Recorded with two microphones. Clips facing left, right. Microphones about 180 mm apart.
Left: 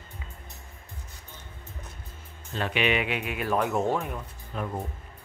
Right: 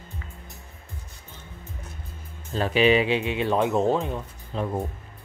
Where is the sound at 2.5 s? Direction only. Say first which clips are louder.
Right 7 dB; 35° right (ahead or behind).